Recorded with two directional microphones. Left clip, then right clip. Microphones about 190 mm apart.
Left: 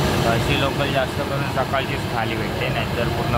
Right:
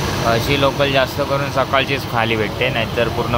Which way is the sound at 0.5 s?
20° right (ahead or behind).